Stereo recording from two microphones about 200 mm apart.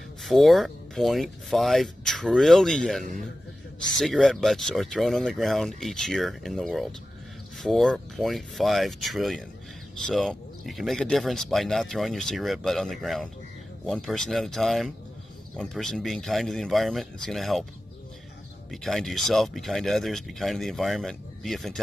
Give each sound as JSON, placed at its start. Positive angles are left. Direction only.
{"t": 0.2, "sound": "speech", "side_deg": 0}
{"t": 18.7, "sound": "speech", "side_deg": 0}